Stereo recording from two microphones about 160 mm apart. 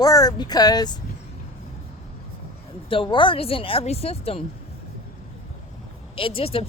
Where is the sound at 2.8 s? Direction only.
30° left (ahead or behind).